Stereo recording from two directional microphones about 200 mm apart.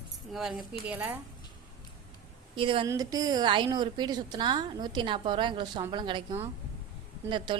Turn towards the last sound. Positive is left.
turn(degrees=-25)  # may be behind; listen again after turning